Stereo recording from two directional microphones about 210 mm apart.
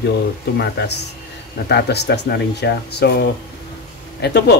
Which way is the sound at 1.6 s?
55° left (ahead or behind).